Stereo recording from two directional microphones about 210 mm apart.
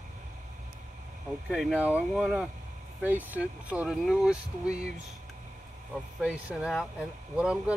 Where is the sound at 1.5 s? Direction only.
Centre (ahead or behind).